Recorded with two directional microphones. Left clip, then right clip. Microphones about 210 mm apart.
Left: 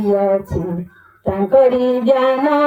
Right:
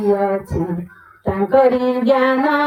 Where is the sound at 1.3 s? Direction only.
35° left (ahead or behind).